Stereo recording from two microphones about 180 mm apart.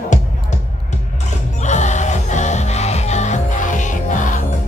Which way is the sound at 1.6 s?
40° left (ahead or behind).